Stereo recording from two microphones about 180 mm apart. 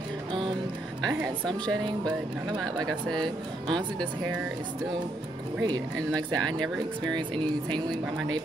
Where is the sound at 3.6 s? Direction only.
25° right (ahead or behind).